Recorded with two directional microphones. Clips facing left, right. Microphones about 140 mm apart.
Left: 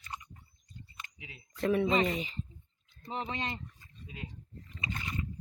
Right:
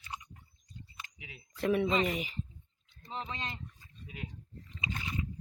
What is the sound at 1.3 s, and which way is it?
Speech, 10° right (ahead or behind).